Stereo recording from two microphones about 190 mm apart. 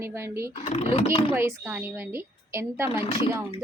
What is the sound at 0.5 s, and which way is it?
Speech, 30° left (ahead or behind).